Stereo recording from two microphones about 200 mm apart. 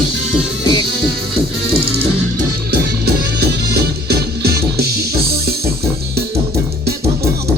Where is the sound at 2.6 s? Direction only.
50° right (ahead or behind).